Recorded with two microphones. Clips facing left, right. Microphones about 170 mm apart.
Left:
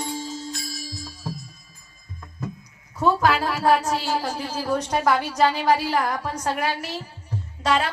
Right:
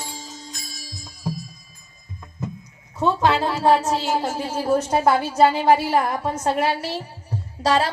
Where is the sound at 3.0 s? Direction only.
25° right (ahead or behind).